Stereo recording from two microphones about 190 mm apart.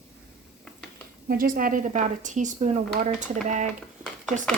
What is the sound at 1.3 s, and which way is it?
A woman's voice, 50° right (ahead or behind).